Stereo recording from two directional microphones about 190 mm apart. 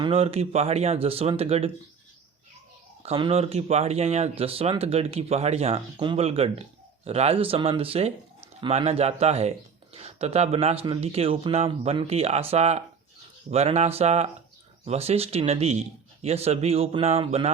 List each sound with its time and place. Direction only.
0.0 s speech: 30° right (ahead or behind)
3.0 s speech: 30° right (ahead or behind)